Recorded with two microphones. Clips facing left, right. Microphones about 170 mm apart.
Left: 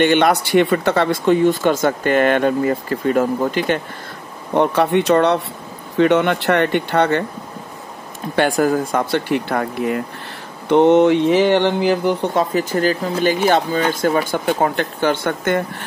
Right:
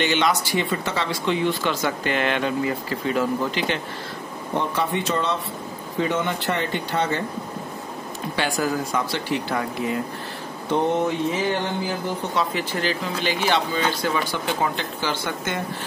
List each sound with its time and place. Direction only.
0.0 s speech: 55° left (ahead or behind)
4.6 s speech: 65° left (ahead or behind)
8.4 s speech: 50° left (ahead or behind)
10.7 s speech: 75° left (ahead or behind)
12.4 s speech: 45° left (ahead or behind)